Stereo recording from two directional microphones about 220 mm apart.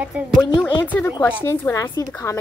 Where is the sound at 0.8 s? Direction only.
10° left (ahead or behind).